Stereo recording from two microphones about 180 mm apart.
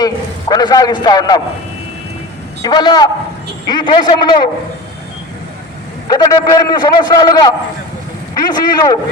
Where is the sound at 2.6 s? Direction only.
25° left (ahead or behind).